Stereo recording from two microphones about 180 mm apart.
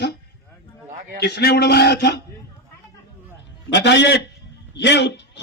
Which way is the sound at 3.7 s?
70° left (ahead or behind).